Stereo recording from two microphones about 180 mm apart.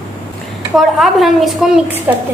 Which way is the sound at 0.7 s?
Centre (ahead or behind).